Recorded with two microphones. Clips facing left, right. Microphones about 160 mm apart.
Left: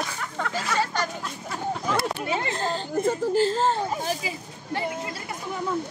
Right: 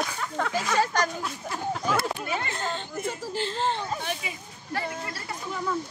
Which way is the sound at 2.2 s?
25° left (ahead or behind).